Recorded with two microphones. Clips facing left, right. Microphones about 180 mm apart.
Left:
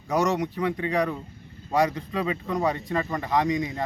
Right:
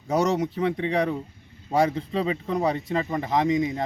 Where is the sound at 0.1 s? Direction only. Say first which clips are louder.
Right 1 dB; 25° right (ahead or behind).